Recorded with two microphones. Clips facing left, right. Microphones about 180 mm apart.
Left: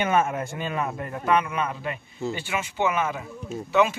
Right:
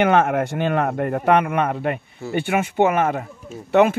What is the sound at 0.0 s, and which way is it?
A man's voice, 70° right (ahead or behind).